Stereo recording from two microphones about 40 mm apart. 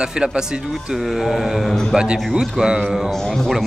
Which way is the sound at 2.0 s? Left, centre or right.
Right.